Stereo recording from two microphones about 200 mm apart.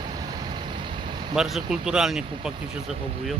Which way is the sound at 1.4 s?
Centre (ahead or behind).